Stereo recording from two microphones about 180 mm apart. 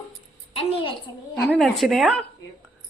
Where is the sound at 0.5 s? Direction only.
30° left (ahead or behind).